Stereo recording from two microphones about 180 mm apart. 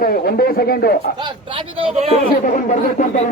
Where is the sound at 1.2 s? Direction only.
25° right (ahead or behind).